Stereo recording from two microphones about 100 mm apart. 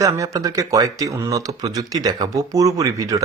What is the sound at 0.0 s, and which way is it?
Speech, 35° right (ahead or behind).